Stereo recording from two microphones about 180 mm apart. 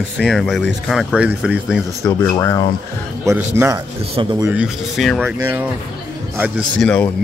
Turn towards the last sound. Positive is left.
turn(degrees=5)  # may be behind; listen again after turning